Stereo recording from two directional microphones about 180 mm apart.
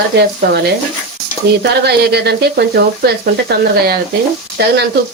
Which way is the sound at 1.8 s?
65° right (ahead or behind).